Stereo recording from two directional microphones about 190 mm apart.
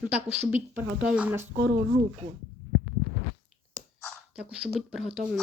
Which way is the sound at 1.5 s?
65° right (ahead or behind).